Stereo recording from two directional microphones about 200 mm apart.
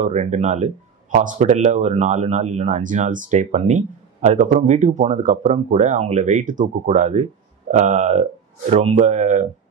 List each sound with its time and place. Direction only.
0.0 s speech: 35° right (ahead or behind)